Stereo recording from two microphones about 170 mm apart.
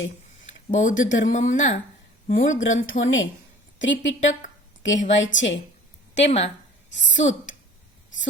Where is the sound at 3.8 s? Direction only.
90° left.